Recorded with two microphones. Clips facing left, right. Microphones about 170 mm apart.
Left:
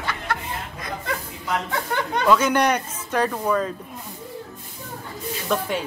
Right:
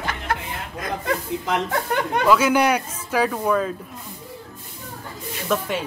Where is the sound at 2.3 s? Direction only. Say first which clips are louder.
Right 1 dB; 5° right (ahead or behind).